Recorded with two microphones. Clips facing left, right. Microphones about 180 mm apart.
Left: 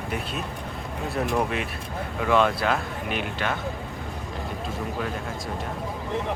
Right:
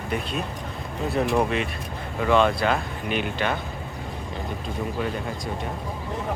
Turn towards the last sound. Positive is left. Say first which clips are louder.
# right 2 dB
turn(degrees=0)  # may be behind; listen again after turning